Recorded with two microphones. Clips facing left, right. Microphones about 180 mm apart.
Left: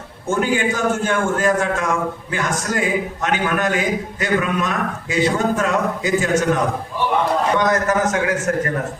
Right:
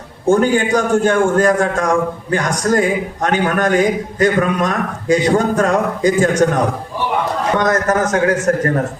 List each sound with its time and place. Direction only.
0.3 s a man's voice: 40° right (ahead or behind)